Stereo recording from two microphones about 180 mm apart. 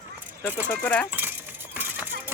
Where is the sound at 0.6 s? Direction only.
10° left (ahead or behind).